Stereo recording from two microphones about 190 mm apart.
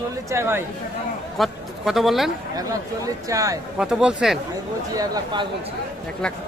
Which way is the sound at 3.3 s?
15° right (ahead or behind).